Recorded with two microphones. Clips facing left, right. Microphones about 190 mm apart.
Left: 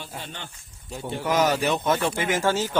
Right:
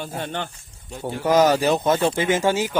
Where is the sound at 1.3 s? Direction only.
35° right (ahead or behind); by 2.7 s 15° right (ahead or behind).